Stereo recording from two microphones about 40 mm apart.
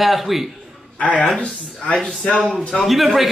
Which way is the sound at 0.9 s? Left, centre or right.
Left.